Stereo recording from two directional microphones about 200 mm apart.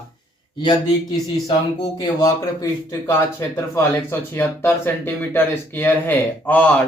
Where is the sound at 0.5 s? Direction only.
20° left (ahead or behind).